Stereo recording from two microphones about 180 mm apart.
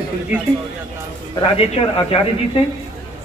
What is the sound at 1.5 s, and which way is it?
Speech, 35° left (ahead or behind).